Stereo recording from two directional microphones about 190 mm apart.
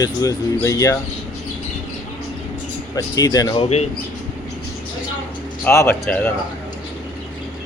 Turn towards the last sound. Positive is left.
turn(degrees=5)  # may be behind; listen again after turning